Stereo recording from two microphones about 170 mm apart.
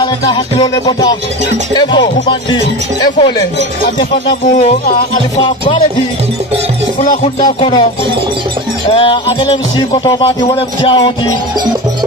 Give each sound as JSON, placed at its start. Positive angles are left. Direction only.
{"t": 1.8, "sound": "music", "side_deg": 25}
{"t": 5.4, "sound": "music", "side_deg": 30}
{"t": 7.4, "sound": "music", "side_deg": 25}
{"t": 8.9, "sound": "music", "side_deg": 30}